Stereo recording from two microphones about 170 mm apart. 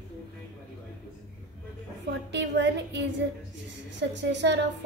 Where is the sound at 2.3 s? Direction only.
90° right.